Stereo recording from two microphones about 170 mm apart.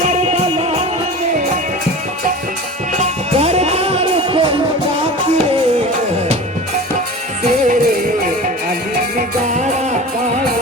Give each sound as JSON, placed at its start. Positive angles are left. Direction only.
{"t": 3.0, "sound": "music", "side_deg": -40}
{"t": 7.4, "sound": "music", "side_deg": -45}